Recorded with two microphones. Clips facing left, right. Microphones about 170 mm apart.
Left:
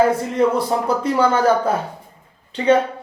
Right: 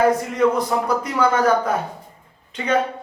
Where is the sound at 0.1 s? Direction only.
30° left (ahead or behind).